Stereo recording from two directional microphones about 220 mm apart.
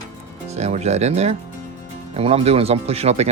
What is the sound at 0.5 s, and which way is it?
Speech, 30° right (ahead or behind).